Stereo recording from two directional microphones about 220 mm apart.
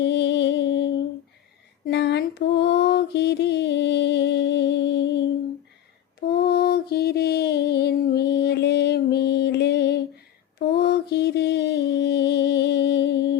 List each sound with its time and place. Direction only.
0.0 s music: 55° left (ahead or behind)
1.9 s mantra: 50° left (ahead or behind)
6.2 s mantra: 45° left (ahead or behind)